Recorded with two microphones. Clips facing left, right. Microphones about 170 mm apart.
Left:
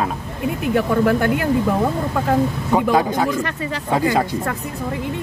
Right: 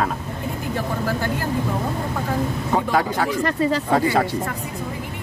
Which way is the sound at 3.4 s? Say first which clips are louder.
Right 5 dB; 35° right (ahead or behind).